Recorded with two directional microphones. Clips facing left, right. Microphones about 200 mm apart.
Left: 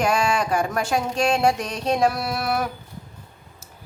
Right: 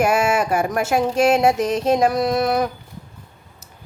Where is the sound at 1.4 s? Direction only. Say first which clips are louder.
Right 4 dB; 20° right (ahead or behind).